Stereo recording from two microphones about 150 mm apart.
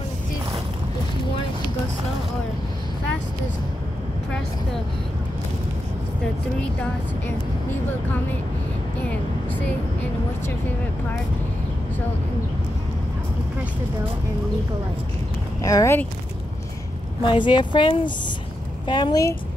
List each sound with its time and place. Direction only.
15.6 s a woman's voice: 20° left (ahead or behind)
17.3 s a woman's voice: 30° left (ahead or behind)